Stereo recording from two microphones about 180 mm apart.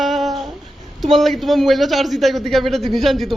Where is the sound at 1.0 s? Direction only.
Centre (ahead or behind).